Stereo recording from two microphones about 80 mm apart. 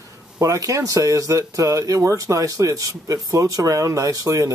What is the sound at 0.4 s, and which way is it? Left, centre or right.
Speech, right.